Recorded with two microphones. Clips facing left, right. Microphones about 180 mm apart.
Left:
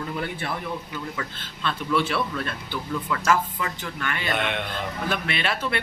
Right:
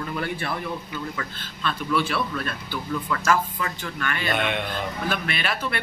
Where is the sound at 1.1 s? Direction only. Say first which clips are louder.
Even; 20° left (ahead or behind).